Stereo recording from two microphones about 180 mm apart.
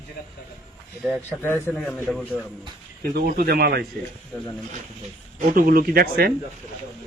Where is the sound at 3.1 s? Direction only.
55° right (ahead or behind).